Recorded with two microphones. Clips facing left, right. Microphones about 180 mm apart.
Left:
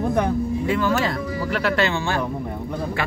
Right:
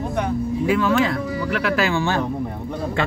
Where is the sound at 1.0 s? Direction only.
30° left (ahead or behind).